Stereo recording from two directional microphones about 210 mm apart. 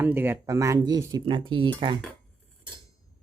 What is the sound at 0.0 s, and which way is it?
Speech, 10° right (ahead or behind).